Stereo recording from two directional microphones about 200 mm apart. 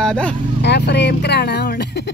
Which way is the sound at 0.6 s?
60° left (ahead or behind).